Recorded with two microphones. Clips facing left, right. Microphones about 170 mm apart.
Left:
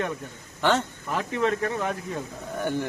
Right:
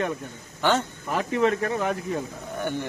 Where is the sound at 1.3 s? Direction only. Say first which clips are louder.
Right 3 dB; 35° right (ahead or behind).